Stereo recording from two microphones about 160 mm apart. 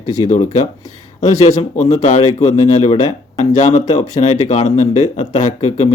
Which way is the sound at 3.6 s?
45° left (ahead or behind).